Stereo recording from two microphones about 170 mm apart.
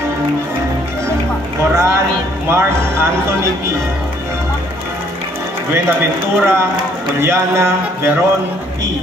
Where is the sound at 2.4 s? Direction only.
15° right (ahead or behind).